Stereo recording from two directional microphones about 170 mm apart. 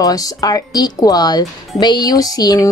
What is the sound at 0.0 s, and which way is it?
A woman's voice, 20° left (ahead or behind).